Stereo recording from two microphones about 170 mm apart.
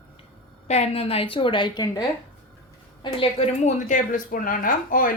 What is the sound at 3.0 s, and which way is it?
A woman's voice, 35° left (ahead or behind).